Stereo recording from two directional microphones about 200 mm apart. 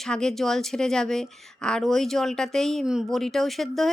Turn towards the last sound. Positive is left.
turn(degrees=0)  # may be behind; listen again after turning